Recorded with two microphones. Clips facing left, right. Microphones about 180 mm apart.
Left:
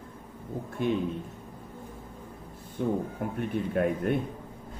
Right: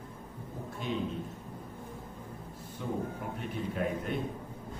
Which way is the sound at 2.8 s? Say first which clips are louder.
Left 6 dB; 50° left (ahead or behind).